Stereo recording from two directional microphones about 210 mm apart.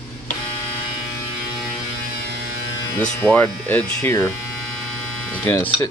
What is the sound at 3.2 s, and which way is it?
Speech, 5° left (ahead or behind).